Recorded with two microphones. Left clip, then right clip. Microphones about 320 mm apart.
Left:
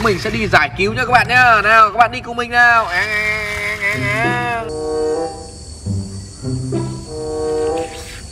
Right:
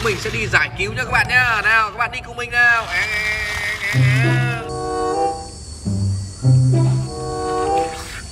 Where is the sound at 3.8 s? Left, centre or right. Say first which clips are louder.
Left 5 dB; centre.